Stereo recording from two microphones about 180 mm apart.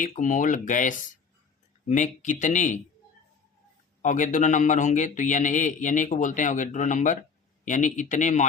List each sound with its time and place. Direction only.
0.0 s speech: 45° left (ahead or behind)
4.0 s speech: 45° left (ahead or behind)